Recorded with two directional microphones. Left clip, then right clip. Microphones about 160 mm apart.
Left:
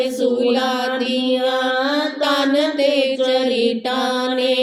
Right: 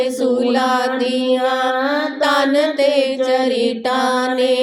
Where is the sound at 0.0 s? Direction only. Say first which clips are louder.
Right 1 dB; 35° right (ahead or behind).